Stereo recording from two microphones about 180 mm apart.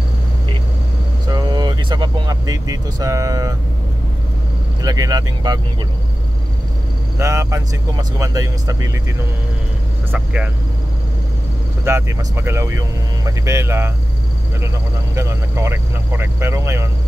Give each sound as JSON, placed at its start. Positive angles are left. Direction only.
{"t": 1.3, "sound": "speech", "side_deg": -25}
{"t": 4.8, "sound": "speech", "side_deg": -20}
{"t": 7.2, "sound": "speech", "side_deg": -15}
{"t": 10.1, "sound": "speech", "side_deg": -5}
{"t": 11.8, "sound": "speech", "side_deg": -15}
{"t": 15.1, "sound": "speech", "side_deg": -15}